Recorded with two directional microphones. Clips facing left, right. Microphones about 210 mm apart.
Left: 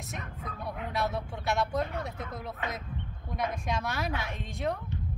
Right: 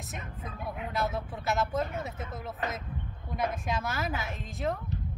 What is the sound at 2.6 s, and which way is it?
Speech, 40° right (ahead or behind).